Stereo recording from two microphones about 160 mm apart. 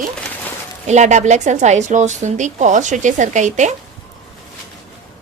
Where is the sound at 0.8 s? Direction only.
45° right (ahead or behind).